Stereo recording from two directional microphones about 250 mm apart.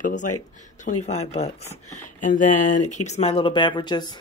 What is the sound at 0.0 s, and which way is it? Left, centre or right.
A woman's voice, left.